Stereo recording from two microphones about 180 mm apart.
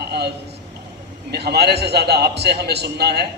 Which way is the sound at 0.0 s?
65° right (ahead or behind).